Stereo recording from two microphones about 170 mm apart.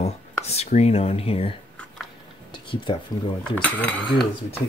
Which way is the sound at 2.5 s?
30° left (ahead or behind).